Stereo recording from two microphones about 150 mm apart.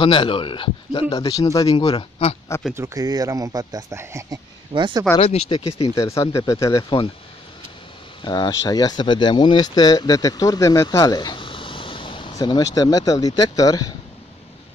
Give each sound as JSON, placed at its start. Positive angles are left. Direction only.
{"t": 0.0, "sound": "a man's voice", "side_deg": 35}
{"t": 1.1, "sound": "speech", "side_deg": 25}
{"t": 2.7, "sound": "speech", "side_deg": -20}
{"t": 4.7, "sound": "speech", "side_deg": -30}
{"t": 5.2, "sound": "a man's voice", "side_deg": 40}
{"t": 5.9, "sound": "speech", "side_deg": 25}
{"t": 8.2, "sound": "speech", "side_deg": 25}